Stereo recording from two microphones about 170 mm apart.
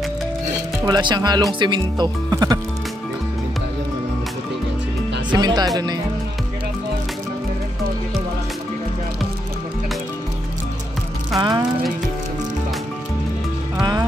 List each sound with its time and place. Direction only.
0.8 s speech: 25° right (ahead or behind)
5.3 s speech: 25° right (ahead or behind)
11.3 s speech: 25° right (ahead or behind)
13.7 s music: 25° right (ahead or behind)